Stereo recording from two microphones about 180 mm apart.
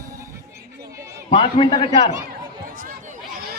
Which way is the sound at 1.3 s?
30° left (ahead or behind).